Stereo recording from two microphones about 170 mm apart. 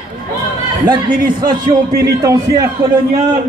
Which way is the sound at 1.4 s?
25° right (ahead or behind).